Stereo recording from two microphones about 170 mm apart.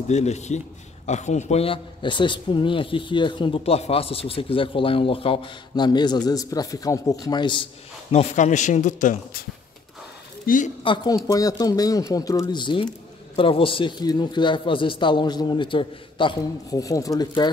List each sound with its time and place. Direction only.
0.1 s a man's voice: 40° left (ahead or behind)
8.1 s a man's voice: 40° left (ahead or behind)
10.4 s speech: 50° left (ahead or behind)
10.8 s a man's voice: 25° left (ahead or behind)